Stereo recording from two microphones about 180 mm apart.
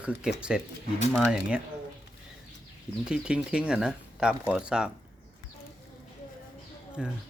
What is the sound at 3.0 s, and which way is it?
Speech, 5° right (ahead or behind).